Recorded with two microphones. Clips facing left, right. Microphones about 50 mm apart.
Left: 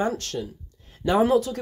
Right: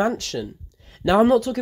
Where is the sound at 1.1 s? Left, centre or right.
Right.